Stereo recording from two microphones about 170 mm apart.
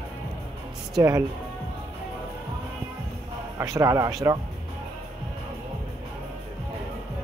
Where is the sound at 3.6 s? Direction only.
20° right (ahead or behind).